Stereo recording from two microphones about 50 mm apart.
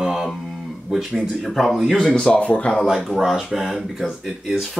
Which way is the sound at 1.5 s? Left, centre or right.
Centre.